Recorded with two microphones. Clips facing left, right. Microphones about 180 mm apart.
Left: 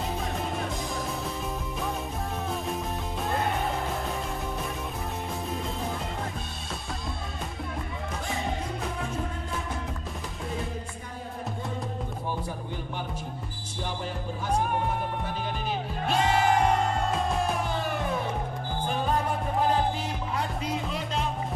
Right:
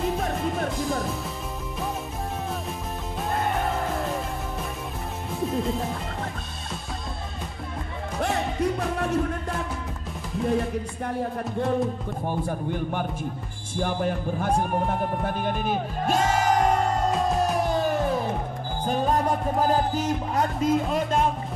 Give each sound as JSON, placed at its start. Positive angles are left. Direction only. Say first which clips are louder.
{"t": 8.2, "sound": "music", "louder": "right 9 dB", "side_deg": -70}
{"t": 12.3, "sound": "speech", "louder": "right 8 dB", "side_deg": -55}
{"t": 17.6, "sound": "music", "louder": "right 6 dB", "side_deg": -40}
{"t": 20.9, "sound": "speech", "louder": "right 8 dB", "side_deg": -50}